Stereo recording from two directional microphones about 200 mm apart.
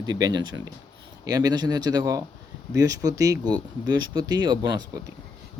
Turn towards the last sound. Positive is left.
turn(degrees=-20)  # may be behind; listen again after turning